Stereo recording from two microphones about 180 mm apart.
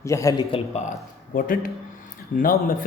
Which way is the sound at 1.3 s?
50° left (ahead or behind).